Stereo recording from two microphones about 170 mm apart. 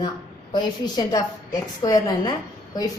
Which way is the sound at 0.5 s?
25° left (ahead or behind).